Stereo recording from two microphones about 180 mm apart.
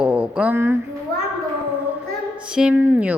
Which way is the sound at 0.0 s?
5° right (ahead or behind).